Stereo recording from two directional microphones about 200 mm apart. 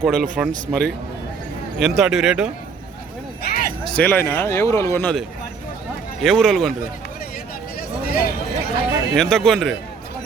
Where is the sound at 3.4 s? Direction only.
50° left (ahead or behind).